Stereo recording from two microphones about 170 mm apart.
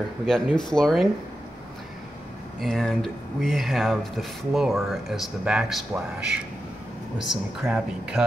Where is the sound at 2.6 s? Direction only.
Centre (ahead or behind).